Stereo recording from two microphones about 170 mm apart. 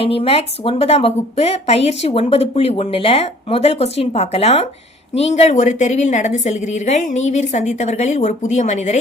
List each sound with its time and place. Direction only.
0.0 s a woman's voice: 35° left (ahead or behind)